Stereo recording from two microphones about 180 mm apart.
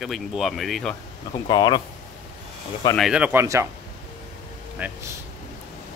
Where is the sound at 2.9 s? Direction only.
5° right (ahead or behind).